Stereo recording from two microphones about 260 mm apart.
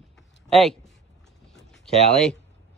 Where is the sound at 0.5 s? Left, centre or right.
Centre.